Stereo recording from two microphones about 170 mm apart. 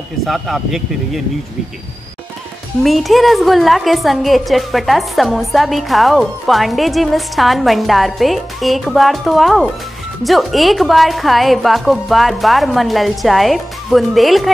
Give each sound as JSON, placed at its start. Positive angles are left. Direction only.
{"t": 0.2, "sound": "a woman's voice", "side_deg": 0}
{"t": 2.8, "sound": "a woman's voice", "side_deg": 0}